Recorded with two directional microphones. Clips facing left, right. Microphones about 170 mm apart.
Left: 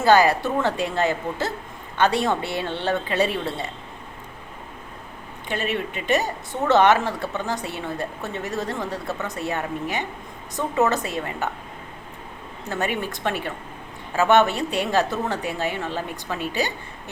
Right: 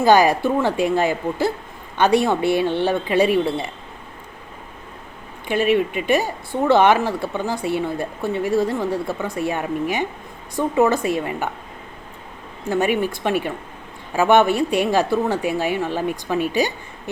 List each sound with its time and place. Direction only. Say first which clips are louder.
0.0 s speech: right 2 dB; 15° right (ahead or behind)
5.5 s speech: right 8 dB; 10° right (ahead or behind)
12.6 s speech: right 7 dB; 10° right (ahead or behind)